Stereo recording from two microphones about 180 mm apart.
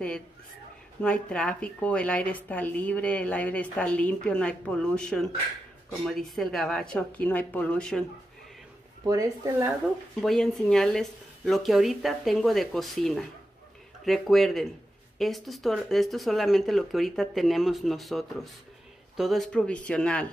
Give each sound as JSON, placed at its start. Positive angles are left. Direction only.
{"t": 1.0, "sound": "a woman's voice", "side_deg": 5}
{"t": 9.0, "sound": "speech", "side_deg": -20}
{"t": 10.2, "sound": "speech", "side_deg": 0}